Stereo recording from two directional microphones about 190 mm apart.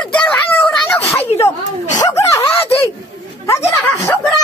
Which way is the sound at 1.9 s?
15° left (ahead or behind).